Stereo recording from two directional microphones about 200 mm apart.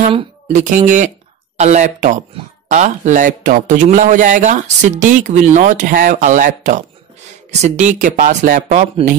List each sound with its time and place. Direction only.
0.1 s speech: 30° right (ahead or behind)